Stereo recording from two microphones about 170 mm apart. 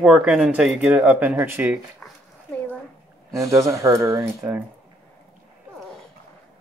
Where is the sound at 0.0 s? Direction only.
5° right (ahead or behind).